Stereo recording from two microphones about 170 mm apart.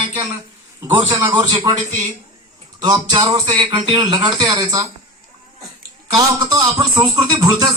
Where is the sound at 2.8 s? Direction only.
25° right (ahead or behind).